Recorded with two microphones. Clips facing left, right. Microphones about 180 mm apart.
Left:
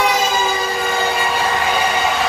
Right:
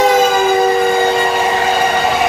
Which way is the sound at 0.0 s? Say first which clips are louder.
Right 7 dB; 50° right (ahead or behind).